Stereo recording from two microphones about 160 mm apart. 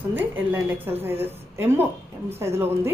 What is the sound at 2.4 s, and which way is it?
Speech, 15° right (ahead or behind).